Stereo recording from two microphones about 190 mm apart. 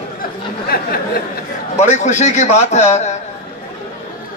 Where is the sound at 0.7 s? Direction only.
50° left (ahead or behind).